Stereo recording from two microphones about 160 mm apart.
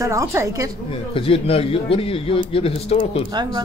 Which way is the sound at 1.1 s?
35° left (ahead or behind).